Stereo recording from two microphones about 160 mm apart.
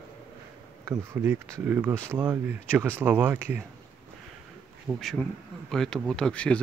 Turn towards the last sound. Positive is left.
turn(degrees=5)  # may be behind; listen again after turning